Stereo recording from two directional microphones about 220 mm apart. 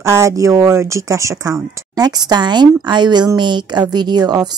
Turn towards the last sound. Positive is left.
turn(degrees=-20)  # may be behind; listen again after turning